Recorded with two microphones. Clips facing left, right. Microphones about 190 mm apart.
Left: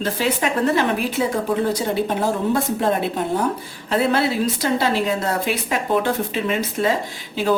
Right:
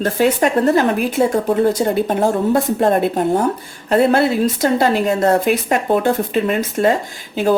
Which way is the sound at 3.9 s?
50° right (ahead or behind).